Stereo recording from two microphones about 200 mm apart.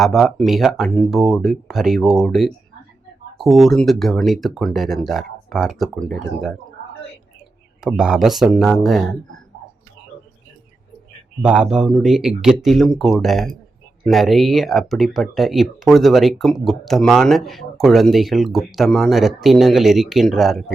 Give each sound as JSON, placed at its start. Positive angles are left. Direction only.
{"t": 0.0, "sound": "speech", "side_deg": 0}
{"t": 7.8, "sound": "speech", "side_deg": -5}
{"t": 11.4, "sound": "speech", "side_deg": -5}